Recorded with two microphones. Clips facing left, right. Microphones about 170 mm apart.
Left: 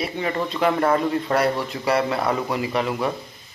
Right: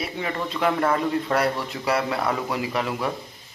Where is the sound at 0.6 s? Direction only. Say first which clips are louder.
Left 2 dB; 5° left (ahead or behind).